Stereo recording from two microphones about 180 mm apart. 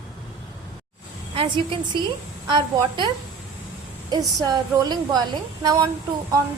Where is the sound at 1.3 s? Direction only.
30° right (ahead or behind).